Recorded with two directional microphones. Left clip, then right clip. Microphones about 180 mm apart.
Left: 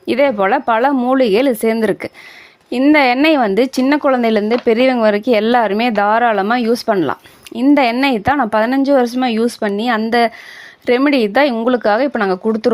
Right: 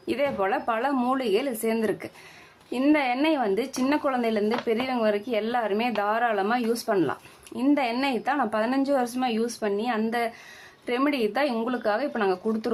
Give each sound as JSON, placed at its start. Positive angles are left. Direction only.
{"t": 0.0, "sound": "speech", "side_deg": 40}